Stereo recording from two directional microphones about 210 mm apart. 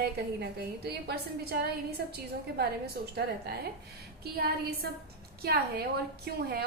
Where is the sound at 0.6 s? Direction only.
50° right (ahead or behind).